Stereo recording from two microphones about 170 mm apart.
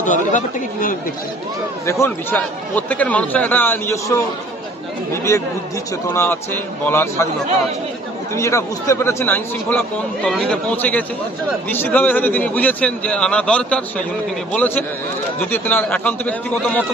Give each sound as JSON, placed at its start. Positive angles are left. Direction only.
{"t": 0.0, "sound": "speech", "side_deg": 50}
{"t": 1.9, "sound": "speech", "side_deg": 15}
{"t": 8.4, "sound": "speech", "side_deg": 15}